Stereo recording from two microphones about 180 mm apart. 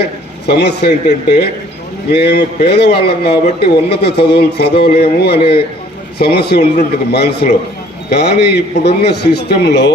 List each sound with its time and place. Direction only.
0.0 s a man's voice: 65° left (ahead or behind)